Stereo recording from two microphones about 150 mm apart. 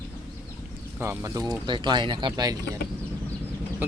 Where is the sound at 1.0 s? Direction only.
20° right (ahead or behind).